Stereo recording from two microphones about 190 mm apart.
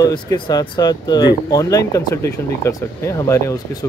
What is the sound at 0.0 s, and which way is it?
Speech, 20° left (ahead or behind).